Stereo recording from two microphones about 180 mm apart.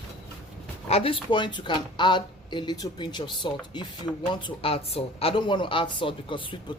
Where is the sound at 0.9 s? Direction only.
30° left (ahead or behind).